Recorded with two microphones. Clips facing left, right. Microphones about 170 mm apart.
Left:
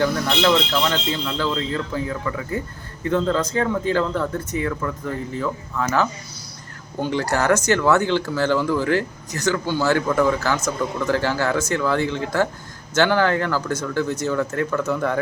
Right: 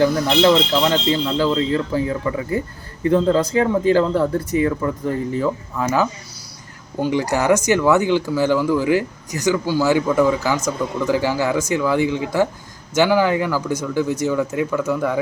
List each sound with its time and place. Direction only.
0.0 s speech: 20° right (ahead or behind)
3.9 s speech: 35° right (ahead or behind); by 15.2 s 5° right (ahead or behind)